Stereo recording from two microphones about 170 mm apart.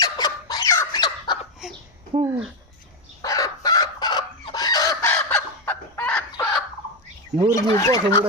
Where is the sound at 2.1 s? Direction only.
35° right (ahead or behind).